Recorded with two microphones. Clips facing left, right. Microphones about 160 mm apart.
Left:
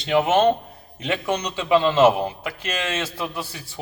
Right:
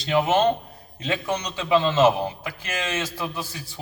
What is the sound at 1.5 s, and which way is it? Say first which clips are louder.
A man's voice: left 2 dB; 25° left (ahead or behind).